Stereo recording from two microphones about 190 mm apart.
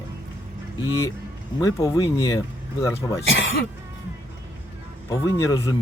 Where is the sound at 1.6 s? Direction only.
20° left (ahead or behind).